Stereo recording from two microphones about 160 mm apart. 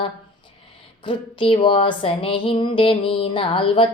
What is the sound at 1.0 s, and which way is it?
Speech, 30° left (ahead or behind).